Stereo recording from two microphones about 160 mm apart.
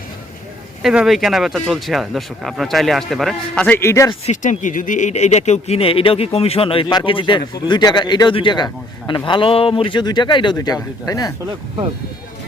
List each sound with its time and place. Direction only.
0.8 s speech: centre (ahead or behind); by 4.1 s 15° left (ahead or behind)
4.3 s speech: 50° left (ahead or behind); by 11.3 s 20° left (ahead or behind)